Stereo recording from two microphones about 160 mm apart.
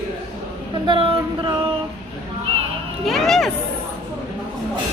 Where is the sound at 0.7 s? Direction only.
30° right (ahead or behind).